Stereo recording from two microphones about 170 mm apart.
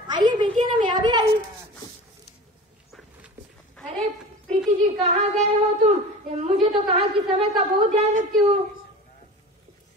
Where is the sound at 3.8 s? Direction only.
5° left (ahead or behind).